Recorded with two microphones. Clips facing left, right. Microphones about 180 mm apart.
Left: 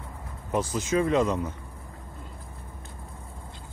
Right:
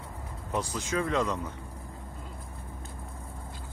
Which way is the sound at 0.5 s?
20° left (ahead or behind).